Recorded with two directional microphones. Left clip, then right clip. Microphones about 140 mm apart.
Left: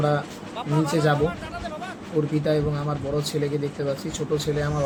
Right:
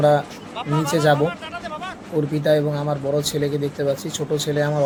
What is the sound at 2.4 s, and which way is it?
Speech, 55° right (ahead or behind).